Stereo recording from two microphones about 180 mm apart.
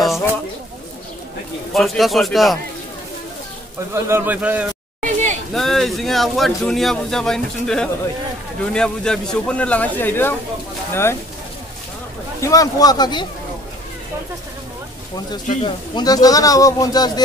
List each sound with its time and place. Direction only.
1.7 s speech: centre (ahead or behind)
3.9 s speech: 10° right (ahead or behind)
5.0 s a sound: 40° right (ahead or behind)
5.5 s speech: centre (ahead or behind)
12.4 s speech: 20° left (ahead or behind)
15.6 s speech: 25° left (ahead or behind)